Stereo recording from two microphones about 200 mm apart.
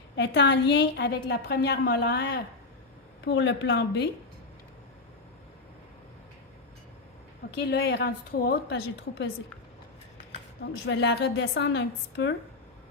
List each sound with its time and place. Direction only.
0.2 s a woman's voice: 60° left (ahead or behind)
7.6 s a woman's voice: 55° left (ahead or behind)
10.8 s a woman's voice: 65° left (ahead or behind)